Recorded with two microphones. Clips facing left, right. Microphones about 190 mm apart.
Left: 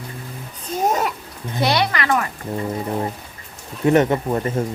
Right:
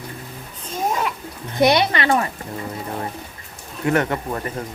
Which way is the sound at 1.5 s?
20° right (ahead or behind).